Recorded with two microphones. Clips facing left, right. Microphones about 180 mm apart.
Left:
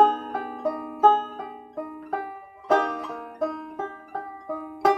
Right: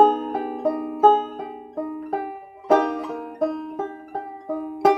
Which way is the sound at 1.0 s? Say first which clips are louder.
Right 3 dB; 20° right (ahead or behind).